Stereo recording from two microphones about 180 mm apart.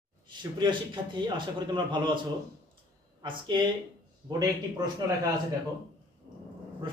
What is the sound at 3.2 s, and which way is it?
Speech, 25° right (ahead or behind).